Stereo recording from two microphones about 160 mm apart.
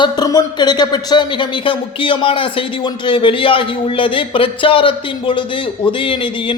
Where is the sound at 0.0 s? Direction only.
25° left (ahead or behind).